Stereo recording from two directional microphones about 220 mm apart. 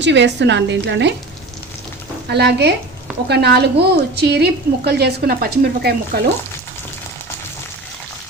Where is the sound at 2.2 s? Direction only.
50° right (ahead or behind).